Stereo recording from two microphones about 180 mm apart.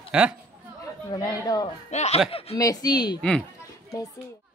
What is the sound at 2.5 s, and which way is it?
Speech, 20° left (ahead or behind).